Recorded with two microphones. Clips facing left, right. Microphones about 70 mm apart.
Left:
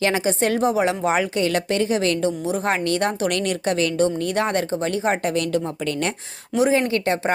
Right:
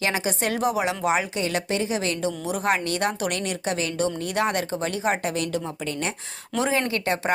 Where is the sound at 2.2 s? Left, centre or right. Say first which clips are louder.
Left 2 dB; left.